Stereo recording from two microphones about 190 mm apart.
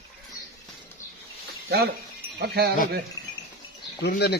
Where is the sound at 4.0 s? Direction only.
60° left (ahead or behind).